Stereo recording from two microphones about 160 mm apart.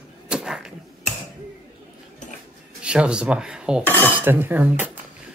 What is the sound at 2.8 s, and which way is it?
Speech, 5° right (ahead or behind).